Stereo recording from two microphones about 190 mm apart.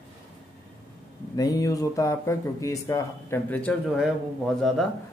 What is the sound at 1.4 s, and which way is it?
Speech, 20° left (ahead or behind).